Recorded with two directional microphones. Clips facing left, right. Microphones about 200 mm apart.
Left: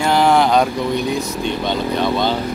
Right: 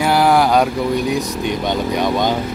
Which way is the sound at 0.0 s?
10° right (ahead or behind).